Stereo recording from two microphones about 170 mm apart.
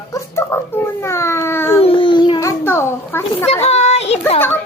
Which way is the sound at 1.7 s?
35° left (ahead or behind).